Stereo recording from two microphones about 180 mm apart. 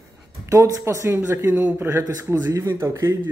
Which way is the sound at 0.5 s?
20° right (ahead or behind).